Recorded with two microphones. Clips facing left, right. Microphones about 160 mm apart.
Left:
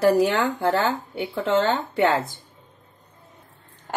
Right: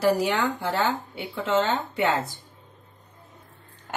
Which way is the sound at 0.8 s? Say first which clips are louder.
Left 2 dB; 45° left (ahead or behind).